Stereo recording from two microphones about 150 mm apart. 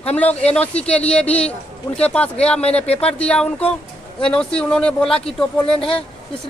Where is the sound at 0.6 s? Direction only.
10° left (ahead or behind).